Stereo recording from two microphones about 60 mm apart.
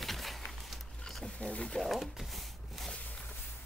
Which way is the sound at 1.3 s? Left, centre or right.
Left.